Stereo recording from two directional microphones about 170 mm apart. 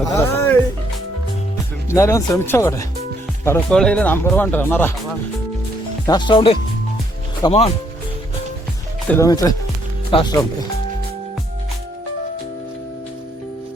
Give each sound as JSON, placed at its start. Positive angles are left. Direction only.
{"t": 0.1, "sound": "music", "side_deg": 15}
{"t": 1.9, "sound": "speech", "side_deg": 15}
{"t": 6.1, "sound": "speech", "side_deg": 25}
{"t": 9.0, "sound": "speech", "side_deg": 15}
{"t": 10.1, "sound": "speech", "side_deg": 30}